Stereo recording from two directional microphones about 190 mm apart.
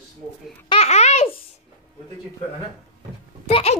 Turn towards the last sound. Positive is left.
turn(degrees=30)  # may be behind; listen again after turning